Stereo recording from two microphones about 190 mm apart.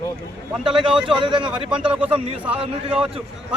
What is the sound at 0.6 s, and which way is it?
A man's voice, 25° right (ahead or behind).